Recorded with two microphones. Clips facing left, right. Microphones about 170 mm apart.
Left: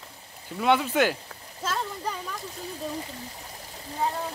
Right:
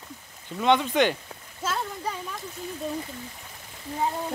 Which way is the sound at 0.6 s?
5° left (ahead or behind).